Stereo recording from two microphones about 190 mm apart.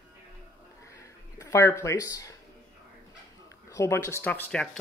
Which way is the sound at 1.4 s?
15° left (ahead or behind).